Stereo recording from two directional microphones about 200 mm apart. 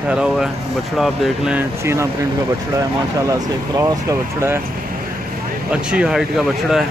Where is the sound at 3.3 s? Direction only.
15° right (ahead or behind).